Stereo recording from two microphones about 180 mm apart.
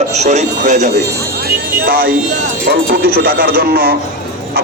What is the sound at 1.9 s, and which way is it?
A man's voice, 55° right (ahead or behind).